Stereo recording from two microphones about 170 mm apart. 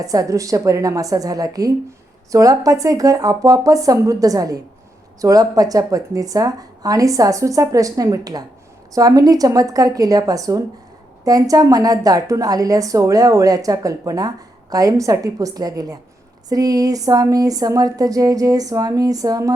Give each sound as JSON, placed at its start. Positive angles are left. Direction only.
{"t": 0.0, "sound": "a woman's voice", "side_deg": -20}